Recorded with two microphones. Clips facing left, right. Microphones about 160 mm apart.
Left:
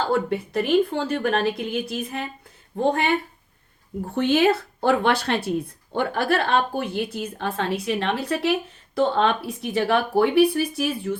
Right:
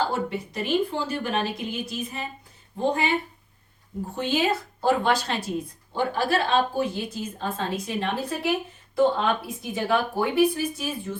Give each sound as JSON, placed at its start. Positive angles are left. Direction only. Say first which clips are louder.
{"t": 0.1, "sound": "a woman's voice", "louder": "left 6 dB", "side_deg": 60}